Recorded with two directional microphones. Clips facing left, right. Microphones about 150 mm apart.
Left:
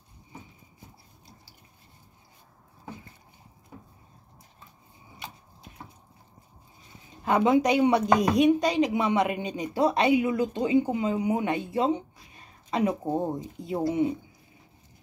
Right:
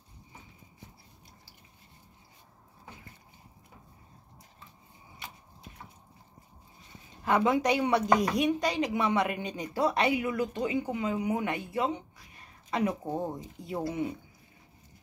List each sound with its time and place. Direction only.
7.2 s speech: 20° left (ahead or behind)